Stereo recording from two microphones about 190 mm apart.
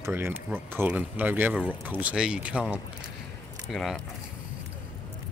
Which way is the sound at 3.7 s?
Centre (ahead or behind).